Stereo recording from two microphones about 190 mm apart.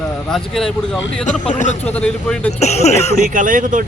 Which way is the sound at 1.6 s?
40° left (ahead or behind).